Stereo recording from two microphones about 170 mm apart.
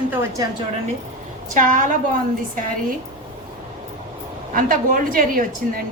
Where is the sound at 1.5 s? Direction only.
50° right (ahead or behind).